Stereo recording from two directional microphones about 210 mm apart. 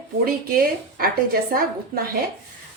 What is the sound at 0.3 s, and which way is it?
A woman's voice, 45° right (ahead or behind).